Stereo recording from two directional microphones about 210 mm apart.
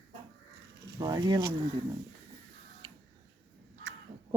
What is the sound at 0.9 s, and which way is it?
Speech, 20° right (ahead or behind).